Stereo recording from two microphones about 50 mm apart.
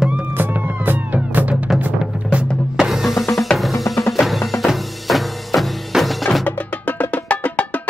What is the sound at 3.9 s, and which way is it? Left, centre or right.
Music, left.